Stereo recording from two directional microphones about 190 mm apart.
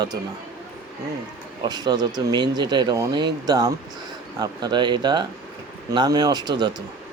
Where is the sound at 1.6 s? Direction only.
20° right (ahead or behind).